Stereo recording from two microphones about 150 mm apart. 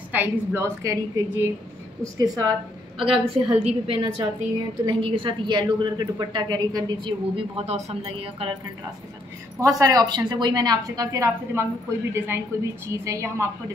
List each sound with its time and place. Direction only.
0.1 s a woman's voice: 15° right (ahead or behind)
3.0 s a woman's voice: 35° right (ahead or behind)
9.6 s a woman's voice: 25° right (ahead or behind)